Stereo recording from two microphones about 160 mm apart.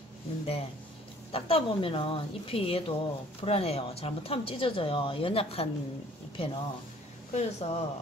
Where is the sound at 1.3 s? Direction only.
35° left (ahead or behind).